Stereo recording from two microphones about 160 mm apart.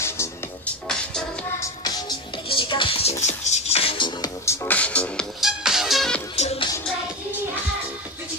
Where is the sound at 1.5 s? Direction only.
20° left (ahead or behind).